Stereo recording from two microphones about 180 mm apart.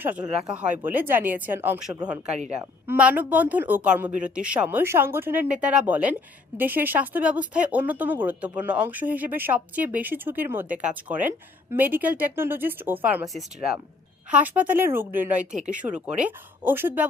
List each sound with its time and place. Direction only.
0.0 s speech: 10° right (ahead or behind)
2.3 s a woman's voice: 35° right (ahead or behind)
2.8 s speech: 10° right (ahead or behind)
15.5 s speech: 40° right (ahead or behind)
15.8 s speech: 5° right (ahead or behind)